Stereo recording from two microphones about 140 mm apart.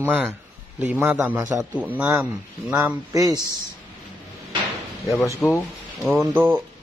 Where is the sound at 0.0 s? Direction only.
15° right (ahead or behind).